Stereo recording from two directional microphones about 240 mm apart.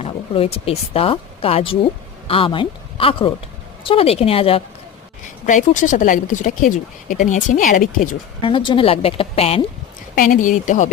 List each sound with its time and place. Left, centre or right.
0.0 s a woman's voice: left
8.4 s a woman's voice: left